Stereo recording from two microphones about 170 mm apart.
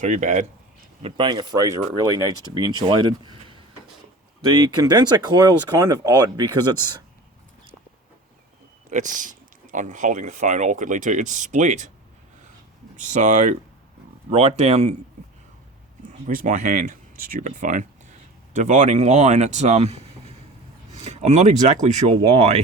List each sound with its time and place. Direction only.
0.0 s speech: 45° right (ahead or behind)
1.0 s speech: 25° right (ahead or behind)
4.4 s speech: 25° right (ahead or behind)
8.9 s speech: 50° right (ahead or behind)
13.0 s speech: 50° right (ahead or behind)
16.2 s speech: 50° right (ahead or behind)